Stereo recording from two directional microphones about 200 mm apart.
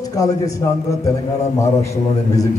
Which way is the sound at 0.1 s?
15° left (ahead or behind).